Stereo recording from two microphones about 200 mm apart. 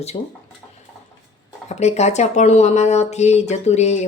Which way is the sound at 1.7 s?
35° left (ahead or behind).